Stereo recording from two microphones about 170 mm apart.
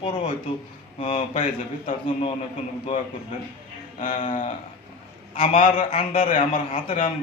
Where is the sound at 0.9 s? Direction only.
35° left (ahead or behind).